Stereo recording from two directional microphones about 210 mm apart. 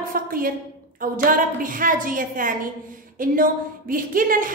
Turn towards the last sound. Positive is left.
turn(degrees=-40)  # may be behind; listen again after turning